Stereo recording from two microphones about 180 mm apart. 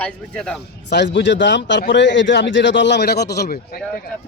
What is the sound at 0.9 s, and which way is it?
Speech, 75° left (ahead or behind).